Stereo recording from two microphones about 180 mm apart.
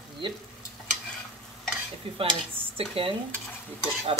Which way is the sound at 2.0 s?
30° right (ahead or behind).